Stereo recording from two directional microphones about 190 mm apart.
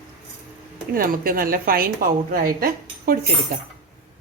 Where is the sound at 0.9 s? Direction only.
50° right (ahead or behind).